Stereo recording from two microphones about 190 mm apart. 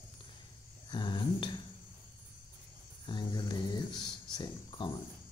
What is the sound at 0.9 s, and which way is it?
Speech, 25° left (ahead or behind).